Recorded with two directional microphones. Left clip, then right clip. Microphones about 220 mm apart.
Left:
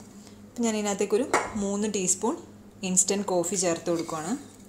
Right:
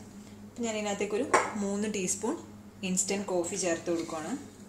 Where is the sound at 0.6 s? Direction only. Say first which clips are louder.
Left 5 dB; 30° left (ahead or behind).